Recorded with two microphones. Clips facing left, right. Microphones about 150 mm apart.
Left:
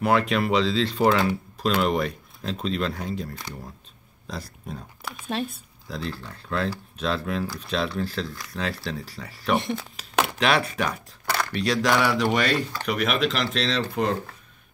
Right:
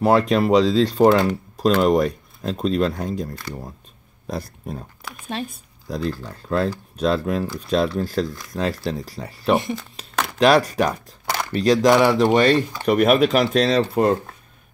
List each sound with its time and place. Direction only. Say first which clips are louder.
0.0 s speech: right 5 dB; 35° right (ahead or behind)
4.3 s speech: right 6 dB; 50° right (ahead or behind)
5.0 s speech: left 1 dB; centre (ahead or behind)
5.9 s speech: right 7 dB; 40° right (ahead or behind)
9.6 s speech: right 2 dB; centre (ahead or behind)
10.4 s speech: right 10 dB; 40° right (ahead or behind)